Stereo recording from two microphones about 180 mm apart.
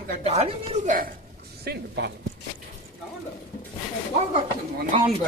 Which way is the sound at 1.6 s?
65° right (ahead or behind).